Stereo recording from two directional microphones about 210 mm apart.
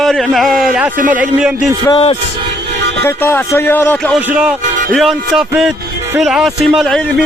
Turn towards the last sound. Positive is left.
turn(degrees=0)  # may be behind; listen again after turning